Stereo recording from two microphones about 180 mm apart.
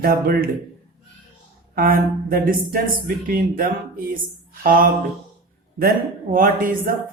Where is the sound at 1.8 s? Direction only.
55° right (ahead or behind).